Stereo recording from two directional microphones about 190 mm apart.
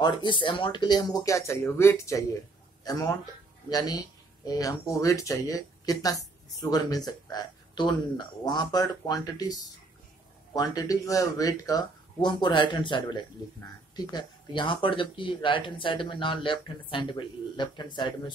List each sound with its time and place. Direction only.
0.0 s speech: 25° left (ahead or behind)